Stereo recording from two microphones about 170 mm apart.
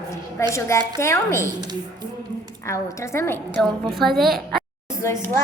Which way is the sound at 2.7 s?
15° left (ahead or behind).